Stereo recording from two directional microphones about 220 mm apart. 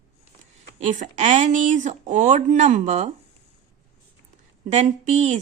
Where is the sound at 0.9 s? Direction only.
35° right (ahead or behind).